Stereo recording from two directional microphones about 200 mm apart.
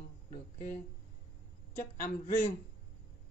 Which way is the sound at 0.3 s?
40° left (ahead or behind).